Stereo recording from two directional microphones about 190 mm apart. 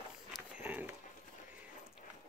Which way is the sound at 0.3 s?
5° right (ahead or behind).